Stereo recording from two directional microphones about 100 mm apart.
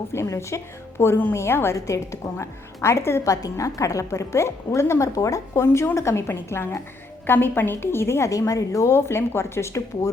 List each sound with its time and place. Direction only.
0.1 s a woman's voice: 25° left (ahead or behind)